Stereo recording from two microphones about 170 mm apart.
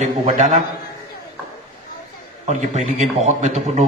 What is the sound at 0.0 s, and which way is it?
Speech, 45° right (ahead or behind).